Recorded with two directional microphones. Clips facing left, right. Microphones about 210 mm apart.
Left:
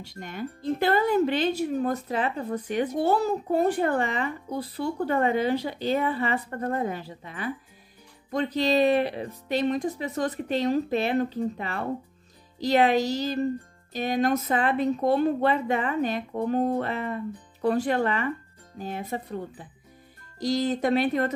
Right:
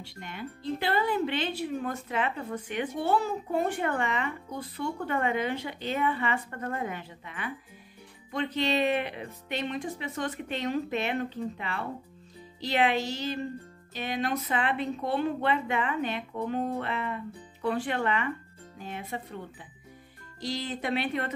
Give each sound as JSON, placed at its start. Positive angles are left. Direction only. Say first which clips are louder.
{"t": 0.0, "sound": "speech", "louder": "left 5 dB", "side_deg": 40}